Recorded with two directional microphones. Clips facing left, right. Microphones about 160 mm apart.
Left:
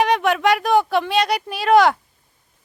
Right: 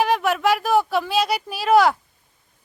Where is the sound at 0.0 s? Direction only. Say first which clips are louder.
Left 2 dB; 5° right (ahead or behind).